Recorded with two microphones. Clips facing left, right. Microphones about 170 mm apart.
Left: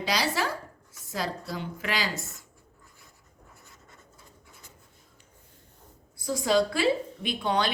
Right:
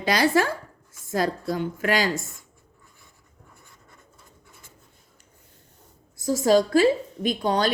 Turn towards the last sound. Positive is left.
turn(degrees=-40)  # may be behind; listen again after turning